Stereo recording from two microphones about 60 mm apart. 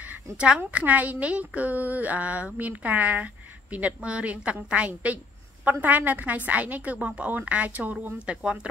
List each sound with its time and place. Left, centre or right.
0.6 s a woman's voice: right